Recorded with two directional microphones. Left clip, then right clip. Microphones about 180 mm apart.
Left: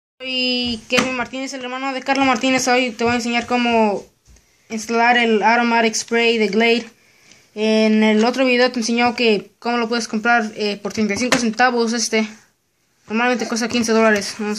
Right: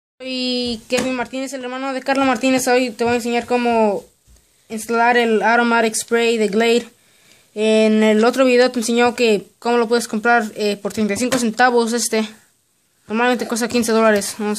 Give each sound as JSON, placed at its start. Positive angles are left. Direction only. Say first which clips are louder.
{"t": 1.1, "sound": "speech", "louder": "right 1 dB", "side_deg": -50}